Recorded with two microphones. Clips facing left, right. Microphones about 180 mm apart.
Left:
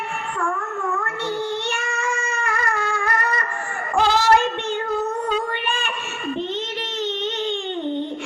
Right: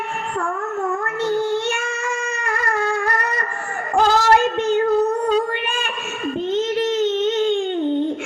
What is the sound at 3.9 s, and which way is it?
Child singing, 45° right (ahead or behind).